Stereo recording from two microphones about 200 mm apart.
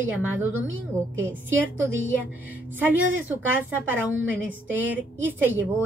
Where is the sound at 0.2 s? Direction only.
10° right (ahead or behind).